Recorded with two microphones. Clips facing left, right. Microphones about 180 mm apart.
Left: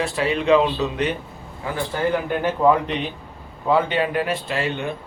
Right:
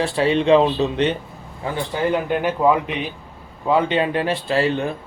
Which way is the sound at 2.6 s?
5° right (ahead or behind).